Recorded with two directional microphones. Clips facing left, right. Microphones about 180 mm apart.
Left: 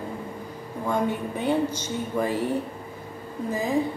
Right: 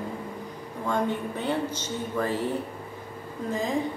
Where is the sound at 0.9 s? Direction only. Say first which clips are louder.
Left 1 dB; 10° left (ahead or behind).